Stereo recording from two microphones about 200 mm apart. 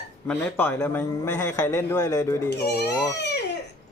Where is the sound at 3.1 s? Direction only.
60° left (ahead or behind).